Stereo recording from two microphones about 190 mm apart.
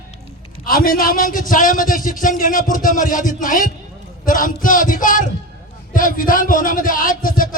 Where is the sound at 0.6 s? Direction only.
50° left (ahead or behind).